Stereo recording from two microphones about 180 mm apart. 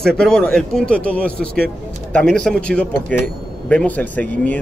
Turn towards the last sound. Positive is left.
turn(degrees=10)  # may be behind; listen again after turning